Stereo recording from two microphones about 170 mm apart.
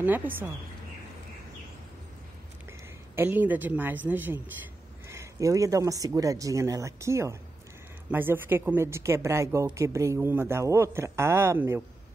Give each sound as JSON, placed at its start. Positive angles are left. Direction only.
{"t": 0.0, "sound": "speech", "side_deg": -10}
{"t": 3.2, "sound": "a man's voice", "side_deg": -10}